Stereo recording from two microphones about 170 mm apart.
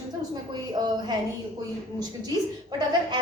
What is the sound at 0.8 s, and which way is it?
Speech, 25° right (ahead or behind).